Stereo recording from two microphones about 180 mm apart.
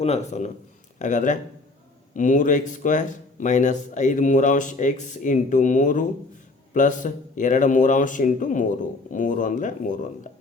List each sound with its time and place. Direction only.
0.0 s a man's voice: 35° left (ahead or behind)